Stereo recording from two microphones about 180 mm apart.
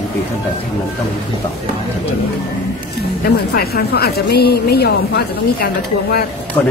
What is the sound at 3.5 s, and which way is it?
A woman's voice, 60° left (ahead or behind).